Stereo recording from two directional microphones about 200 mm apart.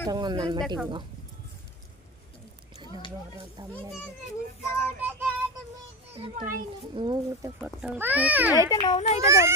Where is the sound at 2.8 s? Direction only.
25° left (ahead or behind).